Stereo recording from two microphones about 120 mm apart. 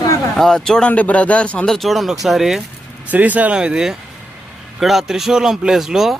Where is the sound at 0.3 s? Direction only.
5° left (ahead or behind).